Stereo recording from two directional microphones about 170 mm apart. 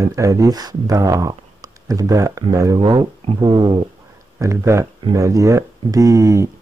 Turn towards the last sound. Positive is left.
turn(degrees=-20)  # may be behind; listen again after turning